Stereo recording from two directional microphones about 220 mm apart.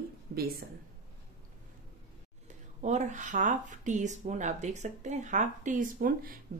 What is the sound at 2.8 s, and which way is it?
Speech, 30° right (ahead or behind).